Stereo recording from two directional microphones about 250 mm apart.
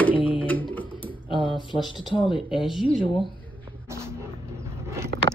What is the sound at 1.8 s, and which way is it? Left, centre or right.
Speech, centre.